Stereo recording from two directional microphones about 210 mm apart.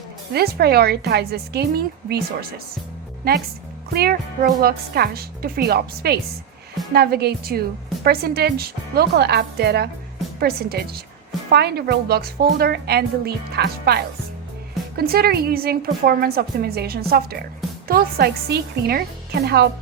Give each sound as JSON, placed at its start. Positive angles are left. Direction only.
{"t": 0.3, "sound": "a woman's voice", "side_deg": -50}